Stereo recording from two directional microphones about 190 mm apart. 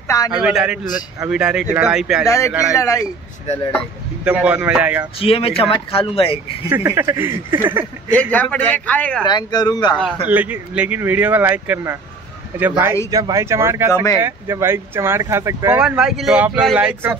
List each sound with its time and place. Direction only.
0.3 s speech: 5° right (ahead or behind)
2.2 s speech: 15° left (ahead or behind)
4.2 s speech: 5° right (ahead or behind)
5.2 s speech: 30° left (ahead or behind)
6.7 s speech: 10° right (ahead or behind)
8.1 s speech: 10° left (ahead or behind)
9.2 s speech: 20° left (ahead or behind)
10.2 s speech: 10° right (ahead or behind)